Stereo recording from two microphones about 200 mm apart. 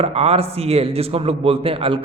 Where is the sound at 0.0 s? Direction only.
30° right (ahead or behind).